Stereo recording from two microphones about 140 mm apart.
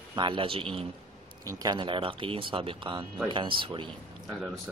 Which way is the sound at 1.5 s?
30° right (ahead or behind).